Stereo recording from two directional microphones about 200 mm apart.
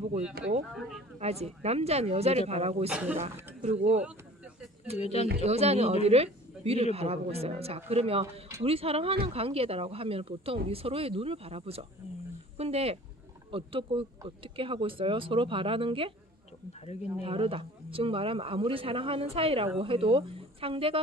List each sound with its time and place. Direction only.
1.2 s speech: 30° right (ahead or behind)
2.9 s speech: 5° right (ahead or behind)
3.2 s speech: 30° right (ahead or behind)
4.9 s speech: 30° left (ahead or behind)
5.4 s speech: 30° right (ahead or behind)
17.2 s speech: 25° right (ahead or behind)